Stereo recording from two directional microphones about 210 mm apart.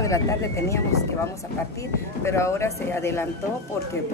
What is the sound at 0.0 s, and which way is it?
Speech, 15° left (ahead or behind).